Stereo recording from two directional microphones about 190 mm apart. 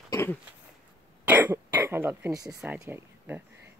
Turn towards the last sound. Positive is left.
turn(degrees=-10)  # may be behind; listen again after turning